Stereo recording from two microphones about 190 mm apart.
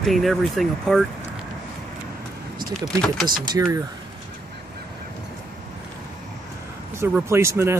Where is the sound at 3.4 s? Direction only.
20° right (ahead or behind).